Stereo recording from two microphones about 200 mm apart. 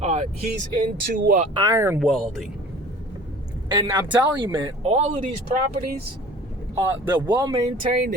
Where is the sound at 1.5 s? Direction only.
15° right (ahead or behind).